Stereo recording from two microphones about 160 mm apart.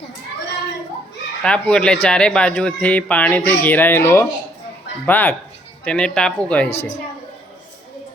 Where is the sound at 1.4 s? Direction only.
5° left (ahead or behind).